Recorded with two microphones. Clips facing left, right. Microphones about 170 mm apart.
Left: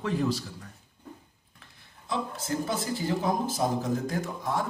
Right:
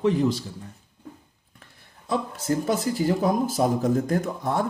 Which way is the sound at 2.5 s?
35° right (ahead or behind).